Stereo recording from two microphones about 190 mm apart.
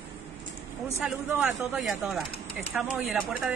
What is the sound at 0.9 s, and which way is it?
A man's voice, 5° right (ahead or behind).